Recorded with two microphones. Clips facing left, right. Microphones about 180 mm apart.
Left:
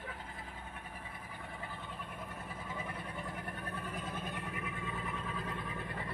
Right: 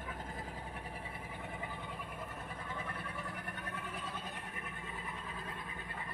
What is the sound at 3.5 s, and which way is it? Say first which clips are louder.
Vehicle: left 2 dB; 40° left (ahead or behind).